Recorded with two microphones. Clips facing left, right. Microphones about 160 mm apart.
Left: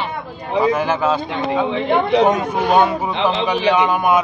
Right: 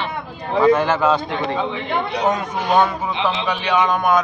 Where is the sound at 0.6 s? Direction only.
10° left (ahead or behind).